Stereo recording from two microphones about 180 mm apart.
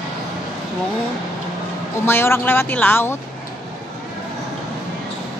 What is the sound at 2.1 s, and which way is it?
Speech, 15° left (ahead or behind).